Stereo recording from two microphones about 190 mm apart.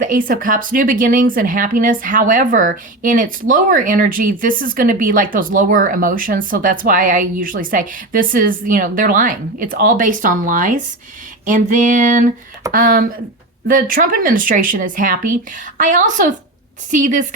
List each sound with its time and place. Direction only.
0.0 s speech: 45° right (ahead or behind)